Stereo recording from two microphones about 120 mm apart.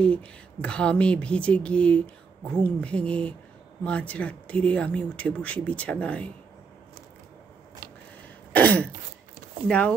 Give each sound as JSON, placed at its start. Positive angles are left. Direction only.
{"t": 0.0, "sound": "speech", "side_deg": 10}
{"t": 8.5, "sound": "speech", "side_deg": 15}